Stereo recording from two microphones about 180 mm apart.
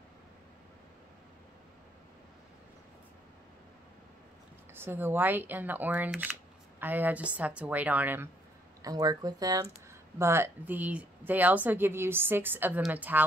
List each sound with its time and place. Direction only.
4.7 s a woman's voice: 10° right (ahead or behind)
8.8 s a woman's voice: 20° right (ahead or behind)